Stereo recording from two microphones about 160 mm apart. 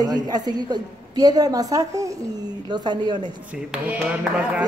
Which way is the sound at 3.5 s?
5° right (ahead or behind).